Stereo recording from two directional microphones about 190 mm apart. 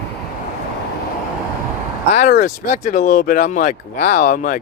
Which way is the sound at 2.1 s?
40° left (ahead or behind).